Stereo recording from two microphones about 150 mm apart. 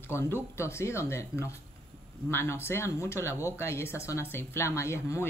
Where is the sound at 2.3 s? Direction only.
15° left (ahead or behind).